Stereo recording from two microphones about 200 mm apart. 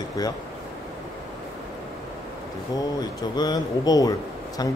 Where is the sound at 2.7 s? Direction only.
20° left (ahead or behind).